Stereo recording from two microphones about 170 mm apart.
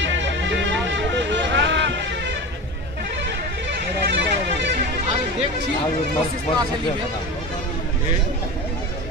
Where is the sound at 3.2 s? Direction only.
90° right.